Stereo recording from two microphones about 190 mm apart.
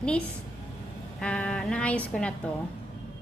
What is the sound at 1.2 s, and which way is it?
Speech, 5° left (ahead or behind).